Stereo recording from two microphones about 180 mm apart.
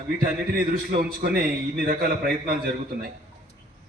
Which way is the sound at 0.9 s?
55° right (ahead or behind).